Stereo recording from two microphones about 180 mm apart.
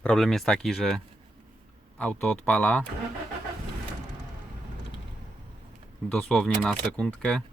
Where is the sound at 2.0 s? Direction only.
5° left (ahead or behind).